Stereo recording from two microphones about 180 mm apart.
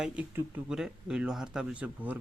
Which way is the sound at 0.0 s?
10° right (ahead or behind).